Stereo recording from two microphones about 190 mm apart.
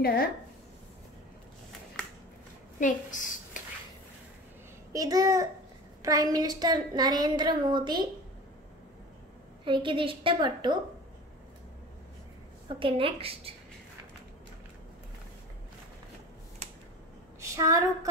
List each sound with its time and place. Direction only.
0.0 s speech: 55° left (ahead or behind)
2.8 s a woman's voice: 45° left (ahead or behind)
4.9 s a woman's voice: 20° right (ahead or behind)
9.7 s a woman's voice: 25° right (ahead or behind)
12.6 s a woman's voice: 30° right (ahead or behind)
17.4 s a sound: 15° right (ahead or behind)